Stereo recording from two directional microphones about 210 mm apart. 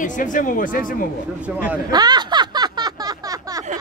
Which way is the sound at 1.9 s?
20° right (ahead or behind).